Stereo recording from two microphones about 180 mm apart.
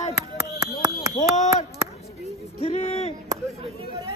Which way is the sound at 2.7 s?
40° left (ahead or behind).